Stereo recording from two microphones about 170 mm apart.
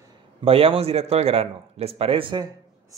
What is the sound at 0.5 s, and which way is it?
Speech, 35° right (ahead or behind).